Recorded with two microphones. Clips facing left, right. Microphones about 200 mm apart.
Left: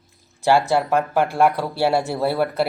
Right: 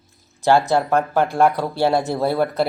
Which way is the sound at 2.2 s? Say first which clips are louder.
Right 1 dB; 40° right (ahead or behind).